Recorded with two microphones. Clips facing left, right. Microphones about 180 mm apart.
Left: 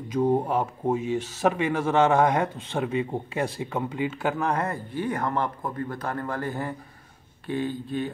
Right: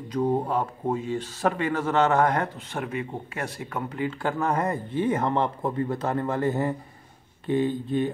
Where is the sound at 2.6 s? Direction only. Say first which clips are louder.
Left 4 dB; 25° left (ahead or behind); by 4.6 s centre (ahead or behind).